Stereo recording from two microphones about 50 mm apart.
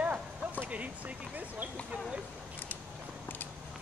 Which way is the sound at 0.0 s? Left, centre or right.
Right.